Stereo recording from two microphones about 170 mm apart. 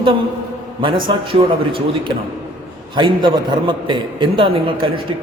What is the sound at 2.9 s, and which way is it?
A man's voice, 30° right (ahead or behind).